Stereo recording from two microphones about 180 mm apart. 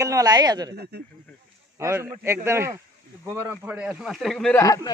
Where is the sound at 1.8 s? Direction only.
15° right (ahead or behind); by 4.5 s centre (ahead or behind).